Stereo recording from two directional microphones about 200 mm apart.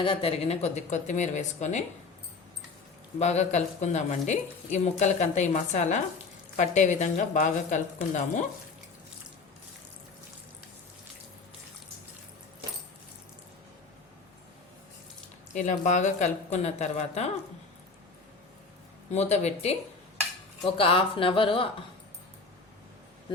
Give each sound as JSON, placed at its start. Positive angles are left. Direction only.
{"t": 0.0, "sound": "speech", "side_deg": 30}
{"t": 3.2, "sound": "speech", "side_deg": 35}
{"t": 15.5, "sound": "speech", "side_deg": 40}
{"t": 19.1, "sound": "speech", "side_deg": 35}
{"t": 20.7, "sound": "speech", "side_deg": 25}